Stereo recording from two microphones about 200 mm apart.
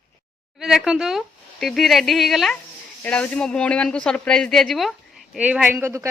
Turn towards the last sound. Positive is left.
turn(degrees=-10)  # may be behind; listen again after turning